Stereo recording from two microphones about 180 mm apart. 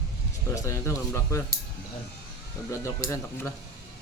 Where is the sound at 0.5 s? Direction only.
15° left (ahead or behind).